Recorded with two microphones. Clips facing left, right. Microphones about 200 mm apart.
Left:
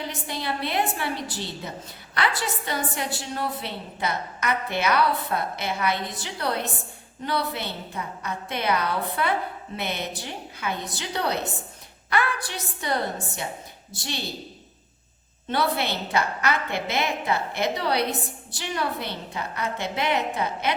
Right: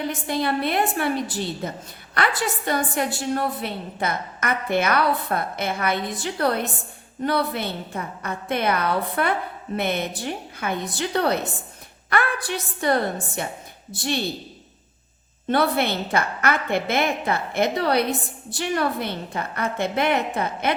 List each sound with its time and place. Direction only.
0.3 s a woman's voice: 50° right (ahead or behind)
15.4 s a woman's voice: 55° right (ahead or behind)